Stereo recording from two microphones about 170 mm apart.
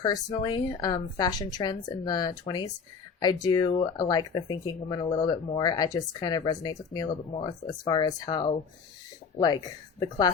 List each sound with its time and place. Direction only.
0.0 s a woman's voice: 25° left (ahead or behind)